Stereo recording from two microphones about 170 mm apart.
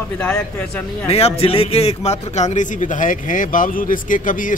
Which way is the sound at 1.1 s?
35° left (ahead or behind).